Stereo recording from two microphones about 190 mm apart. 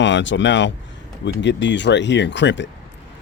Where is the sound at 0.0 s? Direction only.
75° left (ahead or behind).